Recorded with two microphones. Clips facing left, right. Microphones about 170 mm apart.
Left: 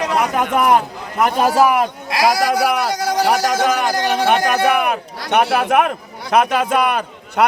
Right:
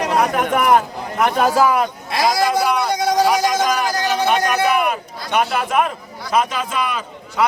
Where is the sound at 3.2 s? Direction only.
60° left (ahead or behind).